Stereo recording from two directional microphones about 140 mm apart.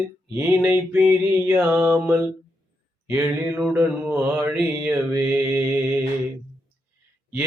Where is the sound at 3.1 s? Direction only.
10° right (ahead or behind).